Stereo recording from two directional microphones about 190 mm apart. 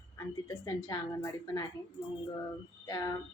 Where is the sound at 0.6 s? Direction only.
20° left (ahead or behind).